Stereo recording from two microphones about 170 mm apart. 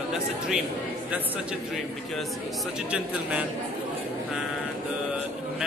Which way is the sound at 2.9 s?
5° right (ahead or behind).